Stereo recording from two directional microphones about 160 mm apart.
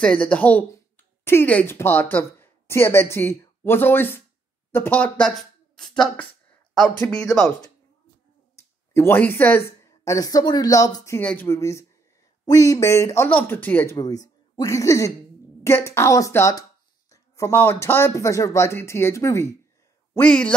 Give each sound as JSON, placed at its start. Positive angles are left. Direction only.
{"t": 0.0, "sound": "speech", "side_deg": 10}
{"t": 8.5, "sound": "speech", "side_deg": 15}
{"t": 11.1, "sound": "speech", "side_deg": 10}
{"t": 13.9, "sound": "speech", "side_deg": 20}
{"t": 20.2, "sound": "speech", "side_deg": 5}